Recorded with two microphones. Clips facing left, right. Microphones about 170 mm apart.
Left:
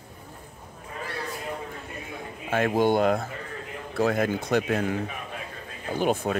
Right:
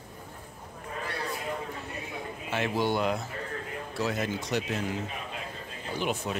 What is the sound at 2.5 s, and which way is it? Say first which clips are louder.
Speech: left 6 dB; 50° left (ahead or behind).